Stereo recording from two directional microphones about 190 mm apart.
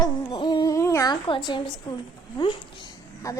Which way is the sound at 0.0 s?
25° left (ahead or behind).